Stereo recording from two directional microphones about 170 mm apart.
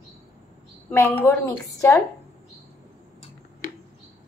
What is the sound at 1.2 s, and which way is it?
Speech, 15° left (ahead or behind).